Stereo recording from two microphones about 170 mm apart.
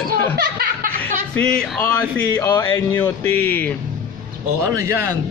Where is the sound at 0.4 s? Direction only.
60° right (ahead or behind).